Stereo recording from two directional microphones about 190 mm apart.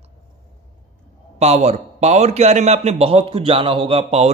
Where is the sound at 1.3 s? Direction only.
35° right (ahead or behind).